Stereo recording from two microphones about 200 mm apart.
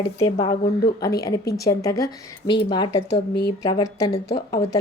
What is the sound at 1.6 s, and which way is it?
Speech, 15° left (ahead or behind).